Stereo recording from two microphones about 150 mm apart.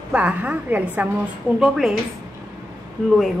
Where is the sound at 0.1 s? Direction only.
10° right (ahead or behind).